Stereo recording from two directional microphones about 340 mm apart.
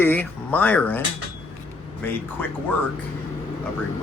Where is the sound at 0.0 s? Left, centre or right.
Centre.